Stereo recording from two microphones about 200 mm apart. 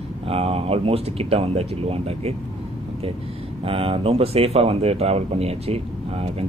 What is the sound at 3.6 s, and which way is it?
Speech, 30° right (ahead or behind).